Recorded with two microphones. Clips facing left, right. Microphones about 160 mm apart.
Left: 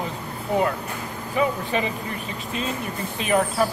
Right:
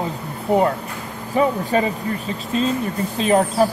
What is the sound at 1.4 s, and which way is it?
Speech, 40° right (ahead or behind).